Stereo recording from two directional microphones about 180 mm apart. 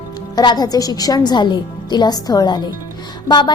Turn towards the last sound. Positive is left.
turn(degrees=25)  # may be behind; listen again after turning